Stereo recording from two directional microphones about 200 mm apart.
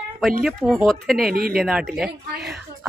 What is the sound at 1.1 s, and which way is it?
Speech, 45° right (ahead or behind).